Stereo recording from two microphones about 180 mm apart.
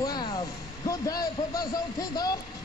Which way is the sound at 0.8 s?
20° left (ahead or behind).